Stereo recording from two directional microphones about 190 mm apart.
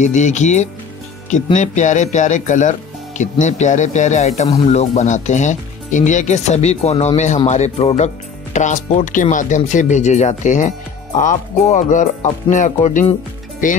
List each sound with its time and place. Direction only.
0.0 s speech: 40° left (ahead or behind)